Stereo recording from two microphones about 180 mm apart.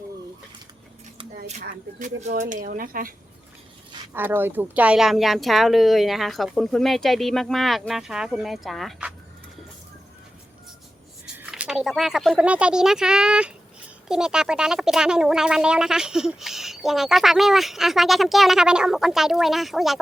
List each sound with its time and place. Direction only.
1.6 s speech: 45° right (ahead or behind)
4.1 s speech: 10° right (ahead or behind)
11.3 s speech: 5° right (ahead or behind)